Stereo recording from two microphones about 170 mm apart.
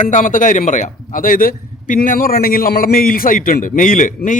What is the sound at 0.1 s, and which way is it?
A man's voice, 50° left (ahead or behind).